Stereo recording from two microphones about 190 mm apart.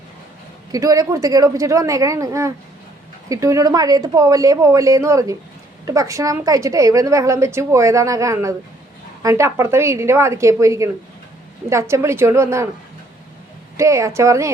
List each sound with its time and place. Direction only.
0.7 s a woman's voice: 20° right (ahead or behind)
13.7 s a woman's voice: 15° right (ahead or behind)